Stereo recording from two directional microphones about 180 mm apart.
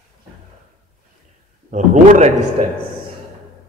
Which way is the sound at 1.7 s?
40° right (ahead or behind).